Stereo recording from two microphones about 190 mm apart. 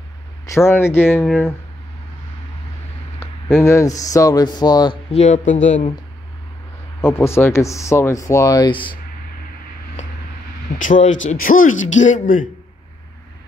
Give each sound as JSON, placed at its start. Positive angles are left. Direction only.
{"t": 0.5, "sound": "speech", "side_deg": 15}
{"t": 3.6, "sound": "speech", "side_deg": 15}
{"t": 5.1, "sound": "speech", "side_deg": 40}
{"t": 7.0, "sound": "speech", "side_deg": 10}
{"t": 10.8, "sound": "speech", "side_deg": 40}